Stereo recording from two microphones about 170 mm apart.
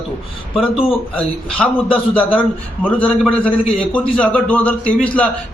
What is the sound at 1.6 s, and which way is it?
A man's voice, centre (ahead or behind).